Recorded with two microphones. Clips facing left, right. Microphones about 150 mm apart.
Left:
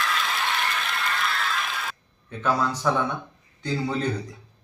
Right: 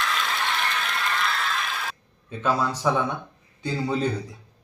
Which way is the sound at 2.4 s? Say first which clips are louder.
Even; 10° right (ahead or behind).